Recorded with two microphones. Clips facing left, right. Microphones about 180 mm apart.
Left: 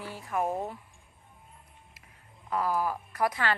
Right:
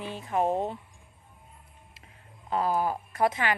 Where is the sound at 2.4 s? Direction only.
25° right (ahead or behind).